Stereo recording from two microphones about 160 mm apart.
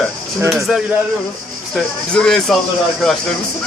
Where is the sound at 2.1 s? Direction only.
5° left (ahead or behind).